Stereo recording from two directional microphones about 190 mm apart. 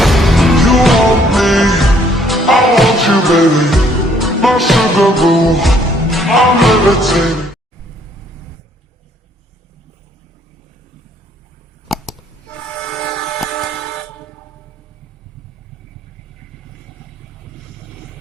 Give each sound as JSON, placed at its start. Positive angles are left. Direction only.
{"t": 0.0, "sound": "music", "side_deg": 0}
{"t": 11.9, "sound": "a sound", "side_deg": 0}
{"t": 12.7, "sound": "train", "side_deg": 5}